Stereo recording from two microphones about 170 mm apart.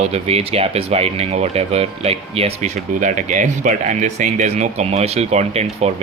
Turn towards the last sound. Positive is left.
turn(degrees=-40)  # may be behind; listen again after turning